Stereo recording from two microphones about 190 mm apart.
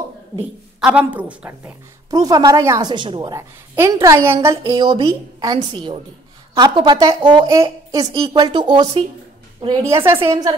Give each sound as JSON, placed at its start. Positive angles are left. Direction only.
{"t": 0.7, "sound": "a woman's voice", "side_deg": -5}
{"t": 2.0, "sound": "a woman's voice", "side_deg": -20}